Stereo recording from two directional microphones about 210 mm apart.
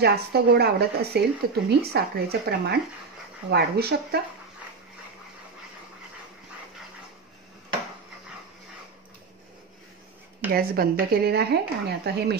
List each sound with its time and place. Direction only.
0.0 s speech: 50° right (ahead or behind)
10.5 s speech: 45° right (ahead or behind)